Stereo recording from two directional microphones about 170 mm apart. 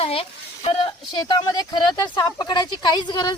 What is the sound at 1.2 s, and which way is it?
A woman's voice, 25° left (ahead or behind).